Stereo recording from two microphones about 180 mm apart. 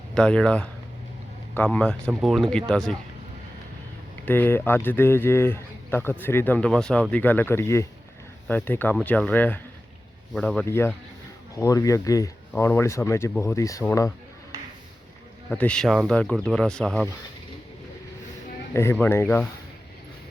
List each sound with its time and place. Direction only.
0.1 s speech: 5° left (ahead or behind)
4.3 s a man's voice: 10° left (ahead or behind)
10.7 s a man's voice: 15° left (ahead or behind)
15.4 s speech: 5° left (ahead or behind)
18.7 s a man's voice: 15° left (ahead or behind)